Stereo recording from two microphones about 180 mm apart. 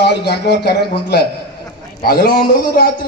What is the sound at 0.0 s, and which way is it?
Speech, 65° left (ahead or behind).